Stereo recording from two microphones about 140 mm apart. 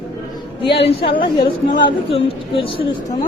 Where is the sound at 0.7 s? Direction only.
45° left (ahead or behind).